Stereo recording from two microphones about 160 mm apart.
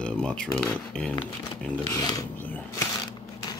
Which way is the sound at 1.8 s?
25° left (ahead or behind).